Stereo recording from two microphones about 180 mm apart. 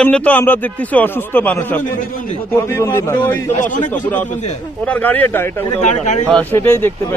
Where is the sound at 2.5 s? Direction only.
15° left (ahead or behind).